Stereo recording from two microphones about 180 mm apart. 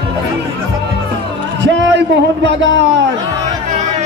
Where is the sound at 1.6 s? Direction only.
75° right (ahead or behind).